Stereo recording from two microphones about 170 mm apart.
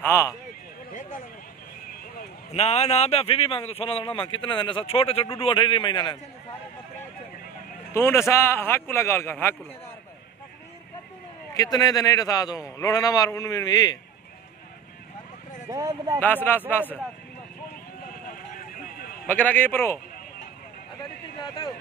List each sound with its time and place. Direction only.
0.0 s a man's voice: 15° left (ahead or behind)
2.5 s a man's voice: 40° left (ahead or behind)
7.9 s speech: 15° left (ahead or behind)
11.5 s a man's voice: 20° left (ahead or behind)
15.7 s speech: 20° right (ahead or behind)
16.2 s speech: 10° left (ahead or behind)
19.2 s speech: 10° left (ahead or behind)